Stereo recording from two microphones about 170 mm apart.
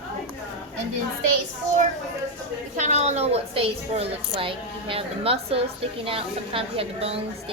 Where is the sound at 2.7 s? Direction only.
45° right (ahead or behind).